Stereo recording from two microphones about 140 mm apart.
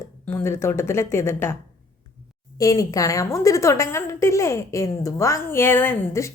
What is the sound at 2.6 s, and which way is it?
A woman's voice, 25° left (ahead or behind).